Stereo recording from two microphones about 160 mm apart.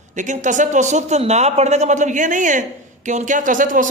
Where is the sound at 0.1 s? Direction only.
50° right (ahead or behind).